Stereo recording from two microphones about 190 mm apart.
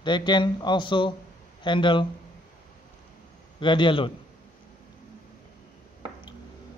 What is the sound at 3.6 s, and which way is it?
Speech, 25° left (ahead or behind).